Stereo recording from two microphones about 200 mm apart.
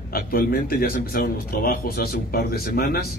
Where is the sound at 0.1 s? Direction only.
45° left (ahead or behind).